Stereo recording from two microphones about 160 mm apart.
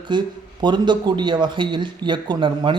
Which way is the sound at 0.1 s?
30° right (ahead or behind).